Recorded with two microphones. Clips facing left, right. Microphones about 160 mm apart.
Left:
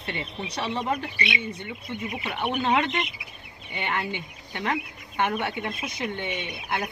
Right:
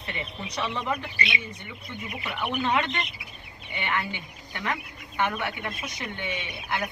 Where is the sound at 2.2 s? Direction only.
25° left (ahead or behind).